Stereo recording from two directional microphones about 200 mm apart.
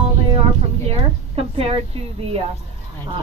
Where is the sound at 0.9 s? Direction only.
30° right (ahead or behind).